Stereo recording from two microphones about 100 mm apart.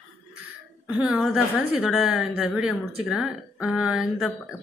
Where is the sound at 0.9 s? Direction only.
10° right (ahead or behind).